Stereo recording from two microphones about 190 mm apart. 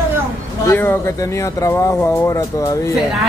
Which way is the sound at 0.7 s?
10° left (ahead or behind).